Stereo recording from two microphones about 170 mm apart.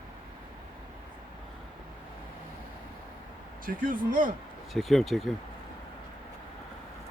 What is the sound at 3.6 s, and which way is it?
Speech, 55° right (ahead or behind).